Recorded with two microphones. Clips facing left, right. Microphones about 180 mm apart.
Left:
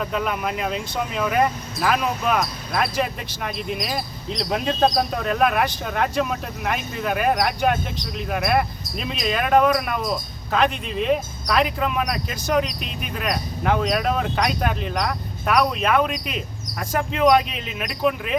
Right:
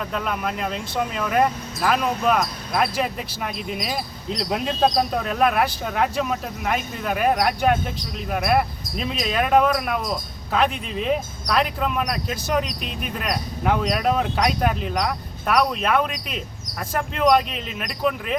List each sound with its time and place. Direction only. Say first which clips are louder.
0.0 s speech: left 2 dB; centre (ahead or behind)